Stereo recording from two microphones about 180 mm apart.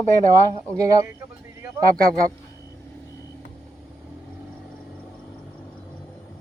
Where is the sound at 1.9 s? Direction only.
55° right (ahead or behind).